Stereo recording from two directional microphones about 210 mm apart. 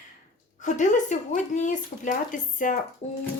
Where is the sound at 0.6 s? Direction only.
35° left (ahead or behind).